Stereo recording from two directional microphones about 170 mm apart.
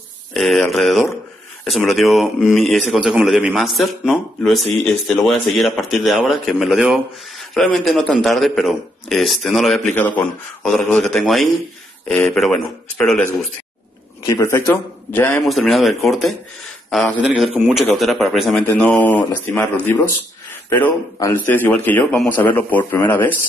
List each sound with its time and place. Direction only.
0.3 s a man's voice: centre (ahead or behind)
14.2 s a man's voice: 15° left (ahead or behind)
15.4 s a man's voice: centre (ahead or behind)